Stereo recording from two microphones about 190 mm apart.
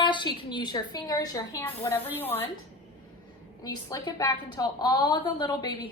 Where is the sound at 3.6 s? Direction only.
20° left (ahead or behind).